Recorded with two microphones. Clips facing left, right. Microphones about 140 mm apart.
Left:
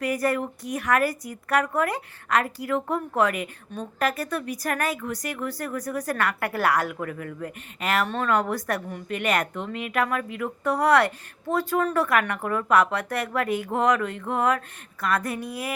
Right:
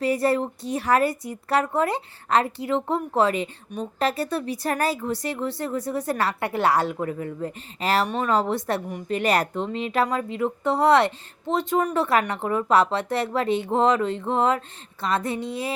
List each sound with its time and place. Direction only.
0.0 s speech: 30° right (ahead or behind)
3.7 s speech: 15° right (ahead or behind)
4.0 s speech: 30° right (ahead or behind)
8.0 s speech: 15° right (ahead or behind)
8.3 s speech: 30° right (ahead or behind)